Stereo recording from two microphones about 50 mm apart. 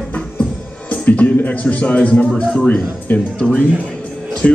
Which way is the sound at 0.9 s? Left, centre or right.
Left.